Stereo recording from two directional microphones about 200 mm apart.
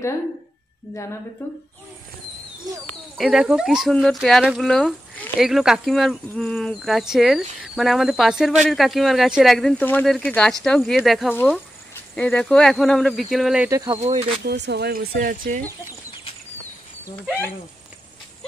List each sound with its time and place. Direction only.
3.2 s speech: centre (ahead or behind)
13.7 s speech: 15° right (ahead or behind)
14.0 s speech: 35° right (ahead or behind)
14.4 s speech: 55° right (ahead or behind)